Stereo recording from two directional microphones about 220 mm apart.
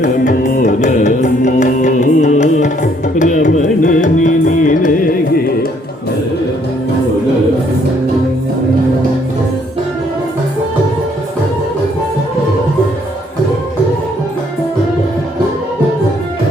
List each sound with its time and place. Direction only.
0.0 s music: 35° left (ahead or behind)